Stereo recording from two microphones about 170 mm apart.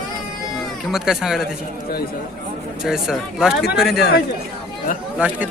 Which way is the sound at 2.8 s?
5° right (ahead or behind).